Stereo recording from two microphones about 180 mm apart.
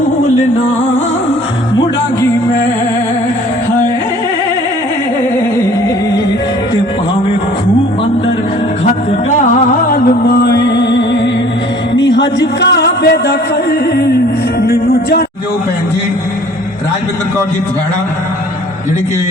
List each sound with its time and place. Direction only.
9.6 s music: 60° left (ahead or behind)
12.1 s music: 80° left; by 15.2 s 60° left (ahead or behind)